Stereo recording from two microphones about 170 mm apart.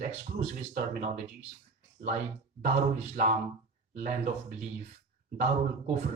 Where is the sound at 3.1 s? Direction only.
50° right (ahead or behind).